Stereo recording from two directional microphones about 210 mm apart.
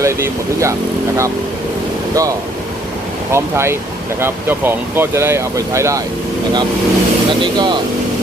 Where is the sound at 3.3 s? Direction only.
10° right (ahead or behind).